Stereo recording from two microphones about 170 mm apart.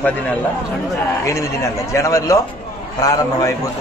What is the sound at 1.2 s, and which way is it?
A man's voice, 15° left (ahead or behind).